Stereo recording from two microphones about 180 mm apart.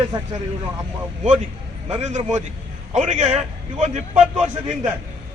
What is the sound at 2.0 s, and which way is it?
A man's voice, 40° right (ahead or behind).